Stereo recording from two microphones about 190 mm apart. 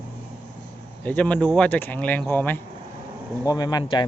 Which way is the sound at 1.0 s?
5° left (ahead or behind).